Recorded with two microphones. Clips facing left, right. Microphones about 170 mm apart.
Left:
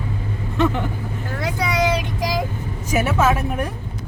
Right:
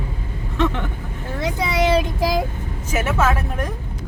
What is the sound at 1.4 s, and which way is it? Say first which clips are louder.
Child singing: right 1 dB; 25° right (ahead or behind).